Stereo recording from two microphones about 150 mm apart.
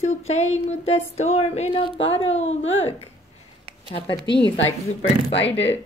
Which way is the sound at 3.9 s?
35° left (ahead or behind).